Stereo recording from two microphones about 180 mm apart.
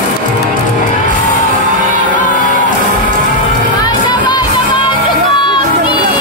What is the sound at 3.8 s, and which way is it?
Music, 25° left (ahead or behind).